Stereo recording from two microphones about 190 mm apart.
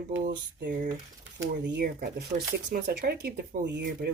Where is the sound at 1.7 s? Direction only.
55° right (ahead or behind).